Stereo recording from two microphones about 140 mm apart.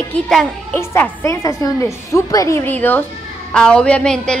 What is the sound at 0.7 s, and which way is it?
A child's voice, 15° left (ahead or behind).